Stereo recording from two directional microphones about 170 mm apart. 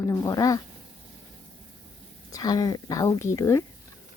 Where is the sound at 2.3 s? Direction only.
20° left (ahead or behind).